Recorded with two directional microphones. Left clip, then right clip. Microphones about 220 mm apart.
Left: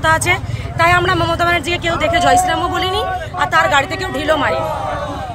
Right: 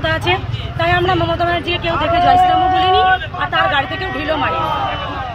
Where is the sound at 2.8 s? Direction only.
40° left (ahead or behind).